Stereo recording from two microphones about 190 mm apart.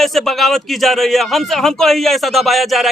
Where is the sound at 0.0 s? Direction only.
Centre (ahead or behind).